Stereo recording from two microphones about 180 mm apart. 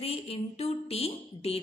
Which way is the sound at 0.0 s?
35° left (ahead or behind).